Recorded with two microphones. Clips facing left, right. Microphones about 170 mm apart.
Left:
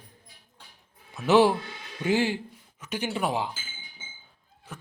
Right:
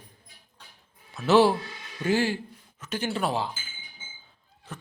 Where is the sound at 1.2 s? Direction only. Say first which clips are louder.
Even; 15° left (ahead or behind).